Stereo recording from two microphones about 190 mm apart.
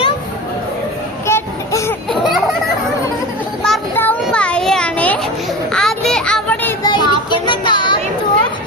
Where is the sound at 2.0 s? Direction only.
Centre (ahead or behind).